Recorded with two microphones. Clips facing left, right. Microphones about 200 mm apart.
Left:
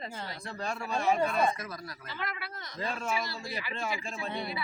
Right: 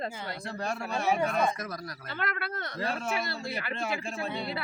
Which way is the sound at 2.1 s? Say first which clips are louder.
Right 5 dB; 60° right (ahead or behind).